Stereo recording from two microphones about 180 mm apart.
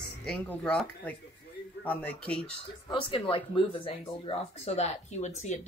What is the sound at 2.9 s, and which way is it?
Speech, 30° left (ahead or behind).